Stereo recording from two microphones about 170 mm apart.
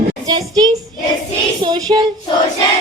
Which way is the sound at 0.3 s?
20° right (ahead or behind).